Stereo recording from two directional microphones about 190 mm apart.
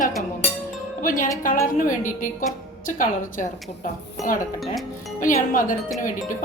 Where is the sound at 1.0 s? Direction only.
45° left (ahead or behind).